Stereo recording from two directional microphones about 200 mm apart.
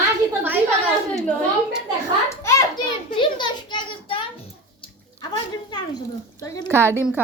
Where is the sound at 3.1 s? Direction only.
25° left (ahead or behind).